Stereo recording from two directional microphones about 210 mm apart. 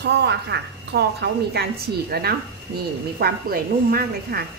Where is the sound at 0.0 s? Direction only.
55° right (ahead or behind).